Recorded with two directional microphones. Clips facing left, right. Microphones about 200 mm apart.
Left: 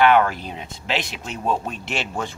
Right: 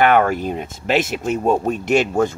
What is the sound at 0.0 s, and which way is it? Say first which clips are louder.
Speech: right 2 dB; 50° right (ahead or behind).